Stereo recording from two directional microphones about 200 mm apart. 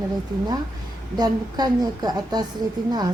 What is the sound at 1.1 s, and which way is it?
Speech, 20° right (ahead or behind).